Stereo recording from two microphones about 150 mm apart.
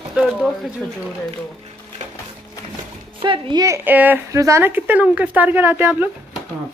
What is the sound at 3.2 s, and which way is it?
Speech, 35° right (ahead or behind).